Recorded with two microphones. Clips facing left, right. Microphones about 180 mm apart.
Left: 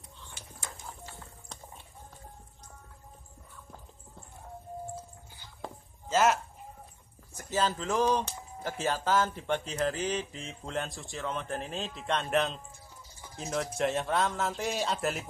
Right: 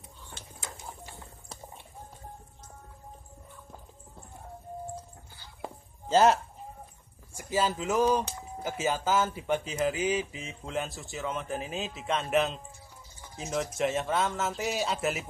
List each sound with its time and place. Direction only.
0.6 s bird: 20° right (ahead or behind)
6.0 s speech: 30° right (ahead or behind)
7.3 s speech: 10° right (ahead or behind)